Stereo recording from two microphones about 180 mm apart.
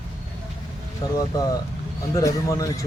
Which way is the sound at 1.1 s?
20° left (ahead or behind).